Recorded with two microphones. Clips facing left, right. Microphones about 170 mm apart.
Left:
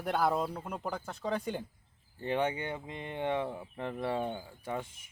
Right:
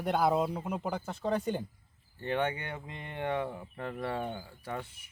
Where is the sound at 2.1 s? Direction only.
15° left (ahead or behind).